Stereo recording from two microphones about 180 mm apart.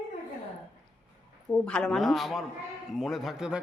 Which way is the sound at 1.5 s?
5° left (ahead or behind).